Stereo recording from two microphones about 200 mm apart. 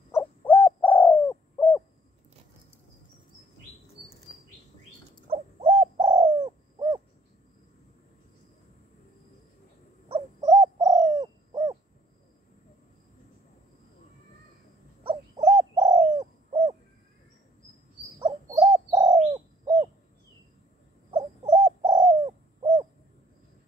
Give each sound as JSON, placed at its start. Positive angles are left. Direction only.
{"t": 0.1, "sound": "bird", "side_deg": 10}
{"t": 5.3, "sound": "owl", "side_deg": -30}
{"t": 6.1, "sound": "bird", "side_deg": -20}
{"t": 10.4, "sound": "bird", "side_deg": -15}
{"t": 15.0, "sound": "bird", "side_deg": -20}
{"t": 18.6, "sound": "bird", "side_deg": -20}
{"t": 21.1, "sound": "owl", "side_deg": -30}
{"t": 21.8, "sound": "bird", "side_deg": -25}